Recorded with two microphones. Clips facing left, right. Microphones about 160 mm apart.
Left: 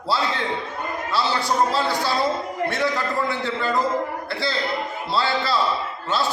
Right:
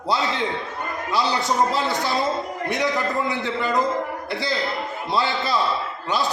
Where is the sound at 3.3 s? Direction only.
20° right (ahead or behind).